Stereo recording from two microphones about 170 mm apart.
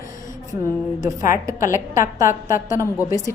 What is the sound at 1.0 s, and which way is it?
Speech, 20° right (ahead or behind).